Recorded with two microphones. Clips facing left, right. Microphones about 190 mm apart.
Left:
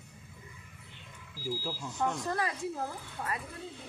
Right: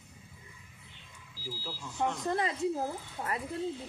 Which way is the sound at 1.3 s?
50° left (ahead or behind).